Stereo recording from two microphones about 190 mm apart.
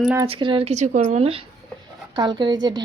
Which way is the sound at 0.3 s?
25° right (ahead or behind).